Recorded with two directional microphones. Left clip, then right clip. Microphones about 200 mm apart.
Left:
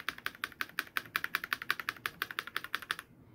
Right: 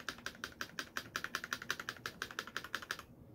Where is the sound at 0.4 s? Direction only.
10° left (ahead or behind).